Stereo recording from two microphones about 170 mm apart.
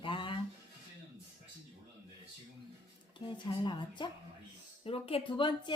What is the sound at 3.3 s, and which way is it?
A woman's voice, 30° left (ahead or behind).